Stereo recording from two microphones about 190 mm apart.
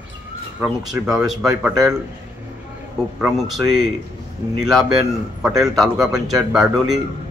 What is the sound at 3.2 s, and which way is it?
Speech, centre (ahead or behind).